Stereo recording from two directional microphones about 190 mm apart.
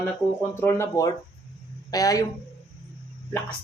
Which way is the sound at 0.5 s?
15° left (ahead or behind).